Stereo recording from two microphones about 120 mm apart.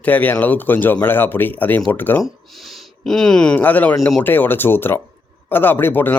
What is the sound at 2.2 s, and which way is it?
Speech, centre (ahead or behind).